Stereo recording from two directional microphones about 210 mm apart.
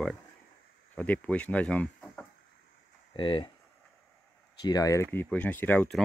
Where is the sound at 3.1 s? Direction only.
25° left (ahead or behind).